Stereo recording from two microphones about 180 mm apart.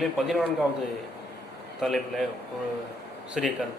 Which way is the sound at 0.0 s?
Centre (ahead or behind).